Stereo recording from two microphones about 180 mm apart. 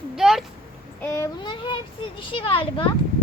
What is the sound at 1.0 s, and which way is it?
A child's voice, 15° left (ahead or behind).